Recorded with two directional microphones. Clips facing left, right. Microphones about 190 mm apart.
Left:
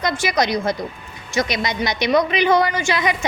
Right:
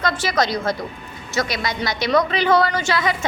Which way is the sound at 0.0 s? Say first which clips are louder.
Left 1 dB; 15° left (ahead or behind).